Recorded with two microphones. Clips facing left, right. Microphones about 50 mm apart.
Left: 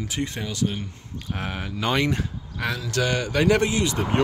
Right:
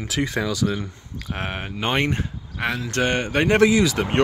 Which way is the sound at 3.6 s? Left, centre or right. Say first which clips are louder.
Right 6 dB; right.